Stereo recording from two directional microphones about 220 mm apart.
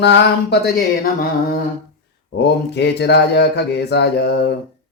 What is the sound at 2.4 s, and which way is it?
Speech, 50° left (ahead or behind).